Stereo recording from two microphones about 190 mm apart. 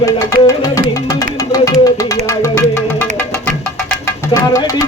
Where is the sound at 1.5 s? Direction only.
20° left (ahead or behind).